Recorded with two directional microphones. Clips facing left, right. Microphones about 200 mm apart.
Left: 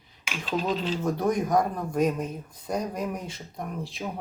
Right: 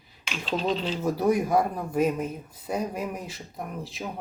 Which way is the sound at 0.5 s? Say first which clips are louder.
Even; 5° left (ahead or behind).